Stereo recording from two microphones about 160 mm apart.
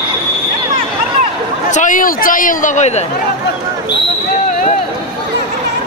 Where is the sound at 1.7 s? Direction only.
55° left (ahead or behind).